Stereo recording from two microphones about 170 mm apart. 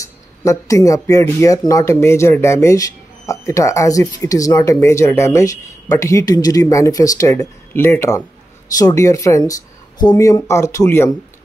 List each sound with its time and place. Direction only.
0.0 s speech: 20° left (ahead or behind)